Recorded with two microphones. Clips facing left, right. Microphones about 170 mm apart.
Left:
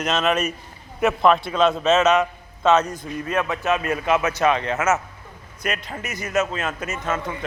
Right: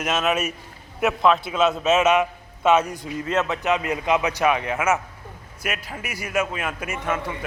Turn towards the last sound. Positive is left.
turn(degrees=-10)  # may be behind; listen again after turning